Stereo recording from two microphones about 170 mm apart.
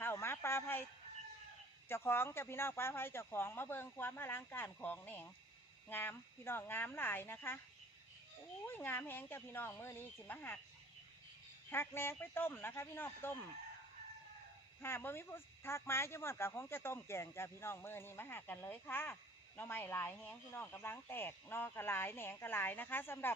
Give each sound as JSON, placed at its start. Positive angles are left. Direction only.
{"t": 0.0, "sound": "a sound", "side_deg": 15}
{"t": 1.9, "sound": "speech", "side_deg": 15}
{"t": 8.6, "sound": "speech", "side_deg": 10}
{"t": 11.7, "sound": "speech", "side_deg": 15}
{"t": 14.8, "sound": "speech", "side_deg": 15}